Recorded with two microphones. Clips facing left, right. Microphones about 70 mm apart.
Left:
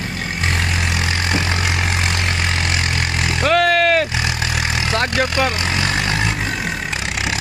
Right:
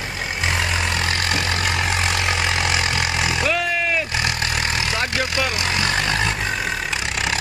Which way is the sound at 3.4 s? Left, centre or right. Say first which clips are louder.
Left 11 dB; left.